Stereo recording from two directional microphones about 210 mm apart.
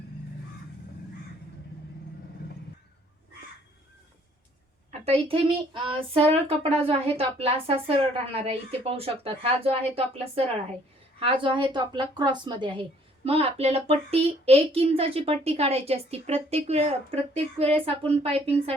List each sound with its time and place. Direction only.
4.9 s a woman's voice: 30° right (ahead or behind)